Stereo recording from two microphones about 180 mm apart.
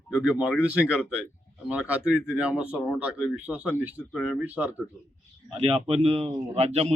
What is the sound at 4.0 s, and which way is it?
Speech, 5° left (ahead or behind).